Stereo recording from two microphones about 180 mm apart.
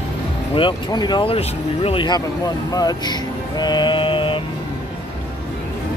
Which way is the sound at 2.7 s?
20° left (ahead or behind).